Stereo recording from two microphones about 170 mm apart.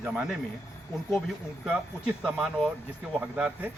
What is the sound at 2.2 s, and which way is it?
Speech, 5° right (ahead or behind).